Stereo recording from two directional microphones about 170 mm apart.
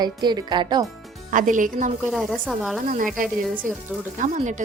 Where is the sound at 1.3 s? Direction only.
50° right (ahead or behind).